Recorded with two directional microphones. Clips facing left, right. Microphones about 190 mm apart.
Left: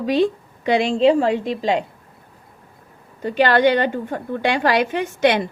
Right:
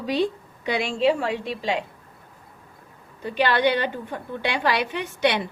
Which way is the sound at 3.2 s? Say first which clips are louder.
Left 6 dB; 45° left (ahead or behind).